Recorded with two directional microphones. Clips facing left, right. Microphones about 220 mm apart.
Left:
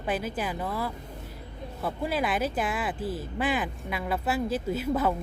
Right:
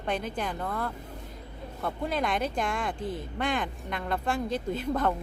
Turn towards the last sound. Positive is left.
turn(degrees=5)  # may be behind; listen again after turning